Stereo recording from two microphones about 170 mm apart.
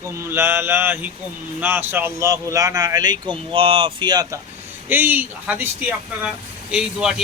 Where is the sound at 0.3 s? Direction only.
15° right (ahead or behind).